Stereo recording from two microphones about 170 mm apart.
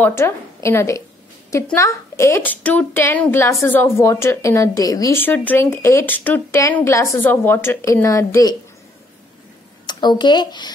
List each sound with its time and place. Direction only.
0.0 s a woman's voice: 15° left (ahead or behind)
9.8 s speech: 25° left (ahead or behind)